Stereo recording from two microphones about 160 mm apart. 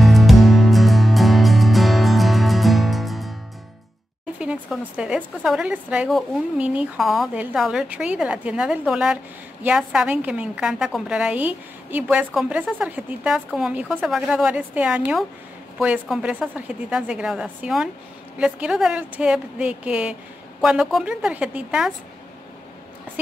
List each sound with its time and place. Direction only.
0.0 s music: centre (ahead or behind)
4.4 s a woman's voice: 5° right (ahead or behind)
23.2 s a woman's voice: 10° right (ahead or behind)